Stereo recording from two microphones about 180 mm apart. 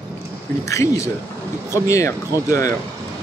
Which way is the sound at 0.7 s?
15° left (ahead or behind).